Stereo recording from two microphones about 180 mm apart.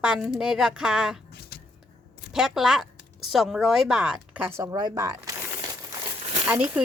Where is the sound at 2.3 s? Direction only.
Centre (ahead or behind); by 5.7 s 20° right (ahead or behind).